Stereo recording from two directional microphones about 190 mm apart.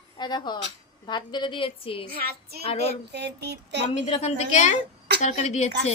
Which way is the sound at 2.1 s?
50° right (ahead or behind).